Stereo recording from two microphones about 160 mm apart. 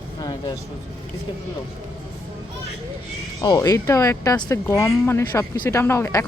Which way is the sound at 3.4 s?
25° left (ahead or behind).